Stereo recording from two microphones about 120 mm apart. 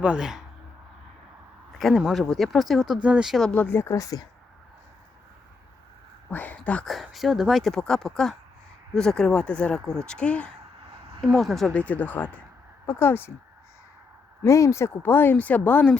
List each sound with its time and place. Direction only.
0.0 s speech: 5° right (ahead or behind)
1.8 s speech: centre (ahead or behind)
3.5 s speech: 15° left (ahead or behind)
6.3 s speech: 15° left (ahead or behind)
11.2 s speech: centre (ahead or behind); by 13.3 s 20° left (ahead or behind)
14.4 s speech: 25° left (ahead or behind)